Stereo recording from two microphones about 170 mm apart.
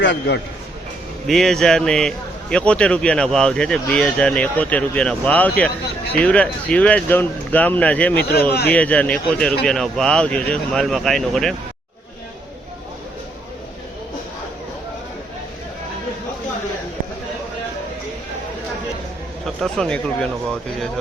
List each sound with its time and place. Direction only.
0.0 s a man's voice: 90° left
1.3 s a man's voice: centre (ahead or behind)
8.2 s speech: 65° left (ahead or behind)
8.7 s a man's voice: 10° left (ahead or behind)
19.5 s a man's voice: centre (ahead or behind)